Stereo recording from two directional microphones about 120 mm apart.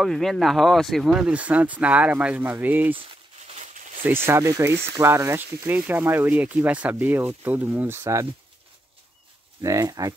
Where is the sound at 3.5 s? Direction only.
80° right.